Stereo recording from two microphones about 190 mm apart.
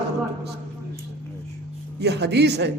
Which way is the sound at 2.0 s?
60° right (ahead or behind).